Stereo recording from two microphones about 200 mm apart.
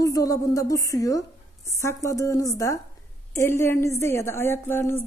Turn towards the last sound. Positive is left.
turn(degrees=10)  # may be behind; listen again after turning